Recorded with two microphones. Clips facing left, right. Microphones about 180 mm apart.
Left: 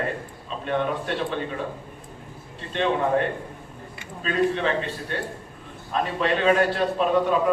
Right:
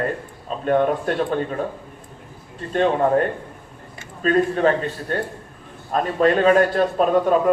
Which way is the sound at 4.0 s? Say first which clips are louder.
Right 5 dB; 45° right (ahead or behind).